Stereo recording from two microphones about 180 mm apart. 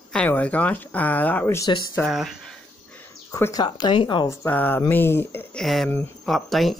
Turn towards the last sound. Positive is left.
turn(degrees=0)  # may be behind; listen again after turning